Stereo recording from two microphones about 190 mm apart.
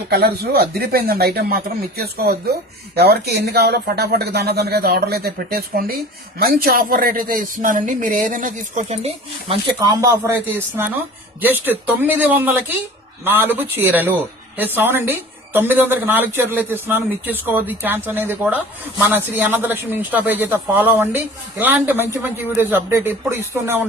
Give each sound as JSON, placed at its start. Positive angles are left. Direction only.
{"t": 0.1, "sound": "a man's voice", "side_deg": -55}